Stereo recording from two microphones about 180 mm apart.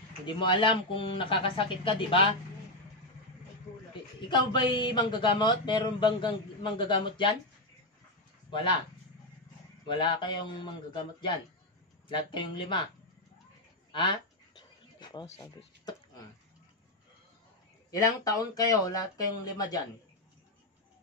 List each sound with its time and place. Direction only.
0.4 s speech: 25° left (ahead or behind)
4.3 s speech: 25° left (ahead or behind)
8.5 s speech: 25° left (ahead or behind)
9.8 s speech: 25° left (ahead or behind)
14.6 s a sound: 25° left (ahead or behind)
15.3 s speech: 15° left (ahead or behind)
17.9 s speech: 20° left (ahead or behind)